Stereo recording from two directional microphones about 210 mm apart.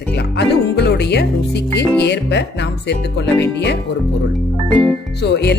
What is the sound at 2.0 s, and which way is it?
Music, 55° left (ahead or behind).